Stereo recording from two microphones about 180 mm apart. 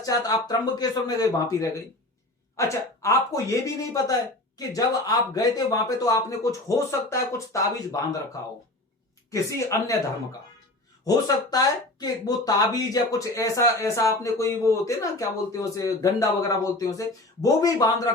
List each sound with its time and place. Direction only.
0.0 s speech: 20° left (ahead or behind)
9.3 s speech: 15° left (ahead or behind)
11.5 s speech: 20° left (ahead or behind)